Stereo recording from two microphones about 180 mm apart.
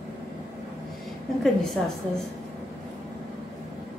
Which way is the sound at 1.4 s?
Centre (ahead or behind).